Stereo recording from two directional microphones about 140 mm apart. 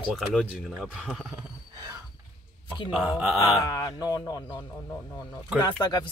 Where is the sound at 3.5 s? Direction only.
25° left (ahead or behind).